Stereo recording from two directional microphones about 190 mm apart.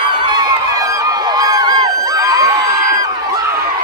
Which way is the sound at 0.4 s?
20° right (ahead or behind).